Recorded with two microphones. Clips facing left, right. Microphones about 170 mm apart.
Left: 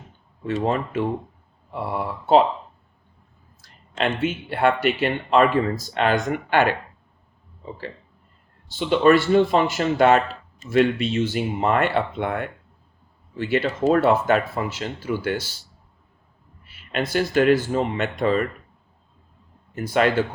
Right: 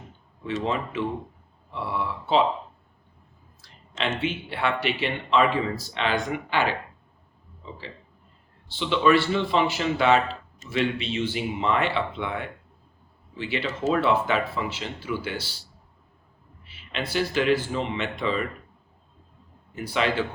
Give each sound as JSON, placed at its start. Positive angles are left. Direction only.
{"t": 0.4, "sound": "speech", "side_deg": 45}
{"t": 3.6, "sound": "speech", "side_deg": 55}
{"t": 8.7, "sound": "speech", "side_deg": 45}
{"t": 16.6, "sound": "speech", "side_deg": 50}
{"t": 19.7, "sound": "speech", "side_deg": 50}